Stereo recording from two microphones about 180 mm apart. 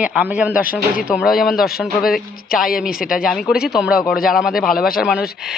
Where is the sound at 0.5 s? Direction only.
50° left (ahead or behind).